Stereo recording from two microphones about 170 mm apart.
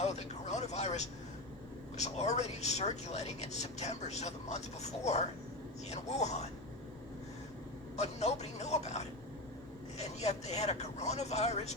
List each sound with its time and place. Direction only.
0.0 s speech: 40° left (ahead or behind)
7.9 s speech: 40° left (ahead or behind)